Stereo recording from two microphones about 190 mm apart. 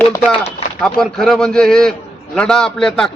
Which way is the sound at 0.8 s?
Centre (ahead or behind).